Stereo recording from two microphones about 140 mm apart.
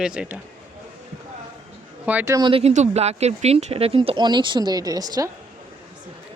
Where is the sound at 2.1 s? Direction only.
10° right (ahead or behind).